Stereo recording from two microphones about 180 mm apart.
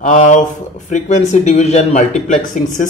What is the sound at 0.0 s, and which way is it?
Speech, 45° left (ahead or behind).